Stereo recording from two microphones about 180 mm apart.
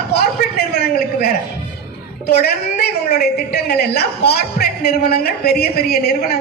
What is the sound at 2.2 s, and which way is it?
A woman's voice, 60° left (ahead or behind).